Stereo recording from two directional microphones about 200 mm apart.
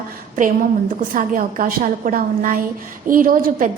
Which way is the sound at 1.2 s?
40° right (ahead or behind).